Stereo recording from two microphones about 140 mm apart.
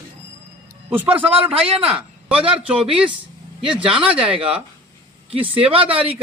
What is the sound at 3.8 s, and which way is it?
Speech, 40° right (ahead or behind).